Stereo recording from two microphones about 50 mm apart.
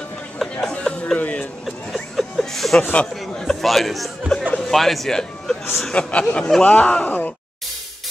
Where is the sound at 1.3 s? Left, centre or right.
Centre.